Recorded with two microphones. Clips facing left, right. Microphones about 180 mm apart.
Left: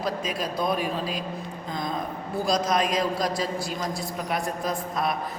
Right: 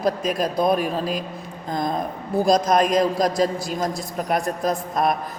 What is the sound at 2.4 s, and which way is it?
A man's voice, 50° right (ahead or behind).